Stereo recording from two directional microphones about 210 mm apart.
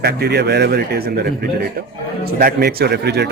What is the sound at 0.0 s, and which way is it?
A man's voice, 50° right (ahead or behind).